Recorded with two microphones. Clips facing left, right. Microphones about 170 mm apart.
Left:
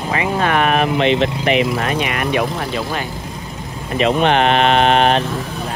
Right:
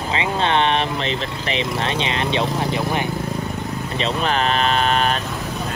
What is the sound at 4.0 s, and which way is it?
Speech, 35° right (ahead or behind).